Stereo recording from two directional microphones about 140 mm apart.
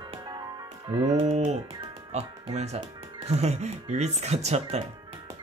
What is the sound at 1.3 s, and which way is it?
Speech, 55° right (ahead or behind).